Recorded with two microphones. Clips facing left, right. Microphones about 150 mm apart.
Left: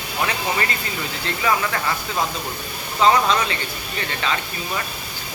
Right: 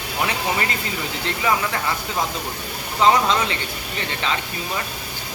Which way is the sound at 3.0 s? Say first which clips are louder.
Even; 20° right (ahead or behind).